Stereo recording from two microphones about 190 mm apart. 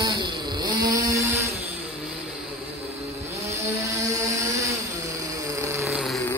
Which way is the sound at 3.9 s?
15° right (ahead or behind).